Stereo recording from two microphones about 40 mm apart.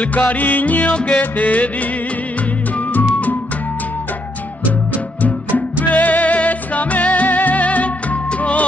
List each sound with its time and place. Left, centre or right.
0.0 s music: left
0.9 s music: left
1.2 s music: left
2.9 s music: left
5.9 s music: left